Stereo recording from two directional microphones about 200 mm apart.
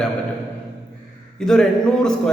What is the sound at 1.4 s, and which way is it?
Speech, 5° left (ahead or behind).